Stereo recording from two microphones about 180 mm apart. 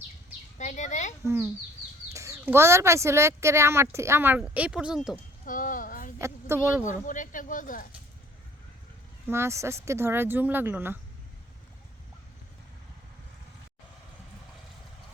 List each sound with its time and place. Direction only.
0.6 s speech: 40° left (ahead or behind)
2.1 s speech: 15° right (ahead or behind)
5.5 s speech: 45° left (ahead or behind)
6.1 s speech: 15° right (ahead or behind)
7.0 s speech: 45° left (ahead or behind)
9.3 s speech: 15° right (ahead or behind)